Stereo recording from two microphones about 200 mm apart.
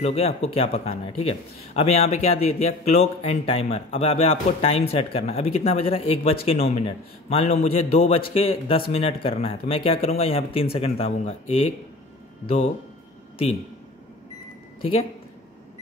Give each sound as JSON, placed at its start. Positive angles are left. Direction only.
{"t": 0.0, "sound": "speech", "side_deg": 30}